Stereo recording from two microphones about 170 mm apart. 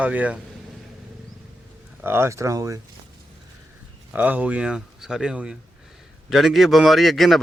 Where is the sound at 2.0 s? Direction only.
15° right (ahead or behind).